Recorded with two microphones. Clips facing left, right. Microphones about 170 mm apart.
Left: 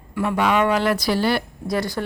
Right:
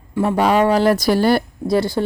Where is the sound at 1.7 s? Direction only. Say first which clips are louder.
Right 6 dB; 30° right (ahead or behind).